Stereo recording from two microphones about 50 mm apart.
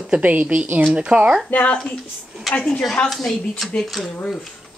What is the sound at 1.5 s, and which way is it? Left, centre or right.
Speech, left.